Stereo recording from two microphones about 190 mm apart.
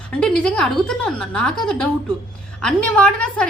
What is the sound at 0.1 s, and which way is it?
A woman's voice, 5° left (ahead or behind).